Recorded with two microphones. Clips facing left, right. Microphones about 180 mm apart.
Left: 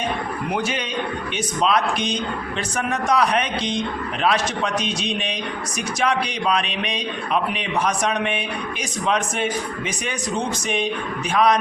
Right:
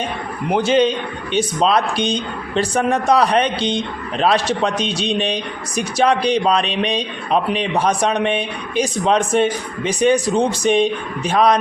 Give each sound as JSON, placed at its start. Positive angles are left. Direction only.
{"t": 0.5, "sound": "speech", "side_deg": -30}